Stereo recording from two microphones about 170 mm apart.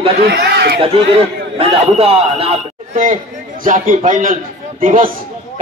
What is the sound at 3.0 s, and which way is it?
A man's voice, 55° right (ahead or behind).